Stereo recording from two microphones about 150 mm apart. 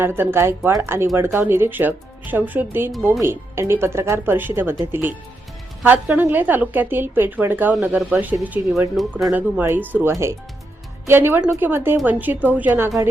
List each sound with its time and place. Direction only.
0.0 s a woman's voice: 15° right (ahead or behind)